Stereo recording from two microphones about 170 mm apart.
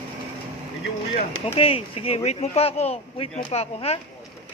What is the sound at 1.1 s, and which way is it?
Speech, 35° left (ahead or behind).